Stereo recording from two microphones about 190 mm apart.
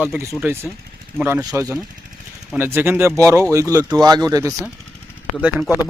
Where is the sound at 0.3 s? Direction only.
10° right (ahead or behind).